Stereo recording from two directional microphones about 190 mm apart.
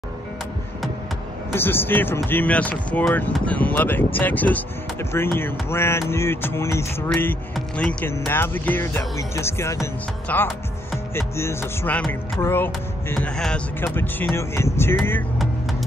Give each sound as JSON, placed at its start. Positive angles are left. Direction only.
{"t": 1.5, "sound": "speech", "side_deg": 10}